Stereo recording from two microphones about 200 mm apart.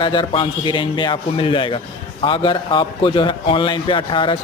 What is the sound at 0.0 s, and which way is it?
A man's voice, 25° left (ahead or behind).